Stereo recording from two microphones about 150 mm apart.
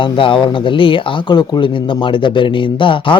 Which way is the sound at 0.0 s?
35° left (ahead or behind).